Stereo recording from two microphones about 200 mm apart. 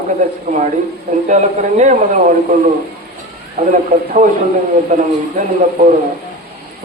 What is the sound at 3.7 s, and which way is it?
Speech, 40° right (ahead or behind).